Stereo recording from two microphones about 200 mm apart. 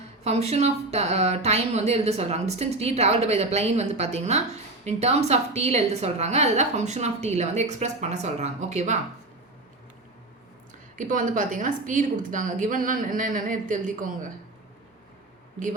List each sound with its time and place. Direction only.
0.3 s speech: 30° right (ahead or behind)
10.9 s speech: 40° right (ahead or behind)